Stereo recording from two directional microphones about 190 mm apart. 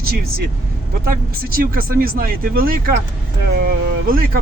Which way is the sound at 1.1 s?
50° right (ahead or behind).